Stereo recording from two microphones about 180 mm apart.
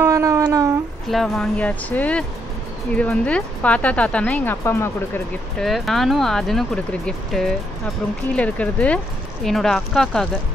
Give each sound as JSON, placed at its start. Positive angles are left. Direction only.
{"t": 0.0, "sound": "speech", "side_deg": -20}
{"t": 1.1, "sound": "speech", "side_deg": 0}
{"t": 5.6, "sound": "speech", "side_deg": 0}